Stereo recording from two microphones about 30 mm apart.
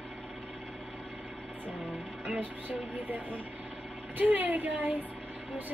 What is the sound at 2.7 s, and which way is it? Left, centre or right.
Speech, right.